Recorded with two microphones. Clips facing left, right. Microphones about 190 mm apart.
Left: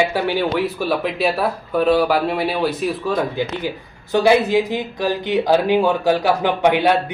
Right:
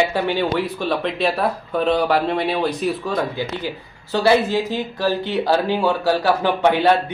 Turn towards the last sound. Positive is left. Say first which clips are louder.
# left 1 dB
turn(degrees=15)  # may be behind; listen again after turning